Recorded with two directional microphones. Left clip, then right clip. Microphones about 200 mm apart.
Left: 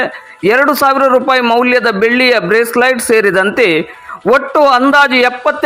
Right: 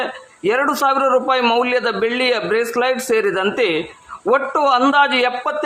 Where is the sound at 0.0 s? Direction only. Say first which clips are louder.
Left 7 dB; 20° left (ahead or behind).